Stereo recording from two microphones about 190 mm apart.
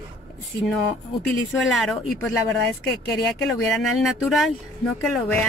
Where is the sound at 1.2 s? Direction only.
Centre (ahead or behind).